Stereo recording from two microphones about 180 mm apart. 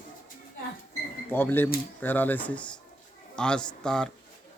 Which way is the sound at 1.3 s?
10° left (ahead or behind).